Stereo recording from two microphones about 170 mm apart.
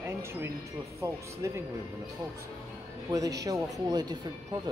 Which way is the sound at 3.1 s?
20° right (ahead or behind).